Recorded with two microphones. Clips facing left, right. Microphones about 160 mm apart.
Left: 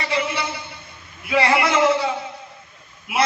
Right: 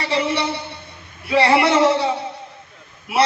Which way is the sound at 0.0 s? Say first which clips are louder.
Right 3 dB; 35° right (ahead or behind).